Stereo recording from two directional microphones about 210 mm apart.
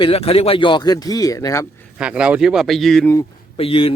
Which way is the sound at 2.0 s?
5° right (ahead or behind).